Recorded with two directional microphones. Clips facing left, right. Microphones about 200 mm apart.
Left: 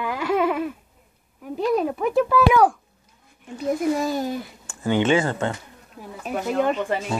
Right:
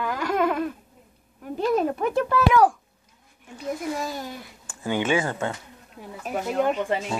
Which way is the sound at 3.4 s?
20° left (ahead or behind).